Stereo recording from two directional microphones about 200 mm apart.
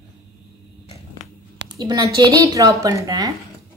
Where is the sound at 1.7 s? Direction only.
20° right (ahead or behind).